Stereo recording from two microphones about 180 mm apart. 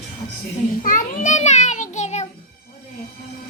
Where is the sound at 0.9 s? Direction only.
45° left (ahead or behind).